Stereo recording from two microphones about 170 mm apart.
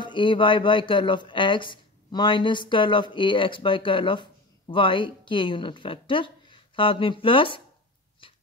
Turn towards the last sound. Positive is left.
turn(degrees=30)  # may be behind; listen again after turning